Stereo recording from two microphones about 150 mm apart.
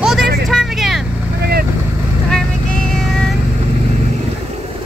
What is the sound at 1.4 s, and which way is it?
Boat, 90° right.